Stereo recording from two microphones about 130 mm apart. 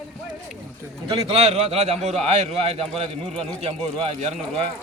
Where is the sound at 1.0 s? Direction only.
50° right (ahead or behind).